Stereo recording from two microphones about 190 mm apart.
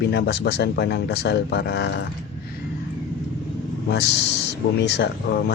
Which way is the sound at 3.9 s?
65° left (ahead or behind).